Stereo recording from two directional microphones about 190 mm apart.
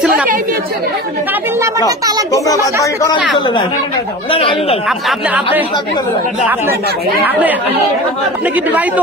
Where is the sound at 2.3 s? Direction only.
15° left (ahead or behind).